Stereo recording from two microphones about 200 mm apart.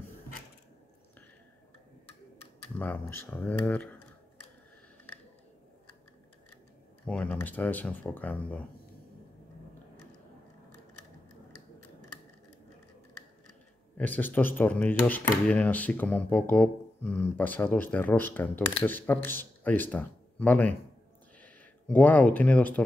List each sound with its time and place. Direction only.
2.8 s speech: 10° left (ahead or behind)
7.1 s speech: 5° left (ahead or behind)
13.9 s speech: 10° left (ahead or behind)